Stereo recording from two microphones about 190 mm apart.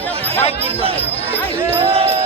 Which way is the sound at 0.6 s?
30° right (ahead or behind).